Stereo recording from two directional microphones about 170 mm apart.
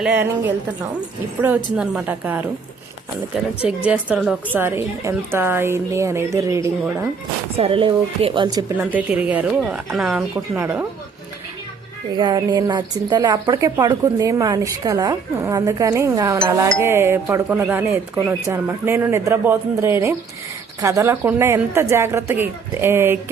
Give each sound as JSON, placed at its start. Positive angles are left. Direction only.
{"t": 0.0, "sound": "speech", "side_deg": -10}
{"t": 3.6, "sound": "speech", "side_deg": -10}
{"t": 7.5, "sound": "speech", "side_deg": -35}
{"t": 8.8, "sound": "a woman's voice", "side_deg": -10}
{"t": 12.1, "sound": "speech", "side_deg": -25}